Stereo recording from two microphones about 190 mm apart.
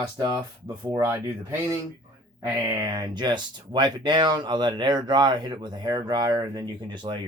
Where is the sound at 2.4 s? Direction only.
15° right (ahead or behind).